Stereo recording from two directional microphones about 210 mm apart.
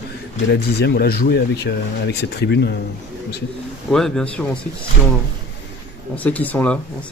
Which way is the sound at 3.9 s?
Centre (ahead or behind).